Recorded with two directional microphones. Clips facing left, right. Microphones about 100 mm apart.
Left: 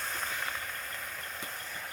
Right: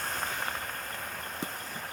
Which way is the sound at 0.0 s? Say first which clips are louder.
Right 3 dB; 45° right (ahead or behind).